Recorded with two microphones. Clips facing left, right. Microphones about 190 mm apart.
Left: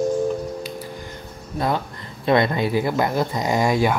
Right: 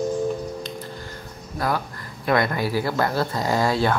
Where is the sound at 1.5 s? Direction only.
25° left (ahead or behind).